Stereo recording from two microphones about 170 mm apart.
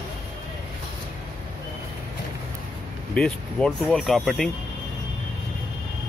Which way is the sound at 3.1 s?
5° left (ahead or behind).